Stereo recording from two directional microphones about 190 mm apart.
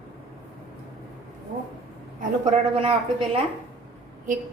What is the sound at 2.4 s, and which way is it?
Speech, 30° right (ahead or behind).